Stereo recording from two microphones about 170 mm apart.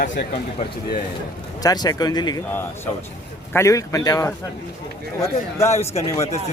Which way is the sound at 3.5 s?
15° left (ahead or behind).